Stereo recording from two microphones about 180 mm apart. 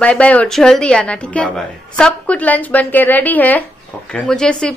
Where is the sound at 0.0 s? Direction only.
5° left (ahead or behind).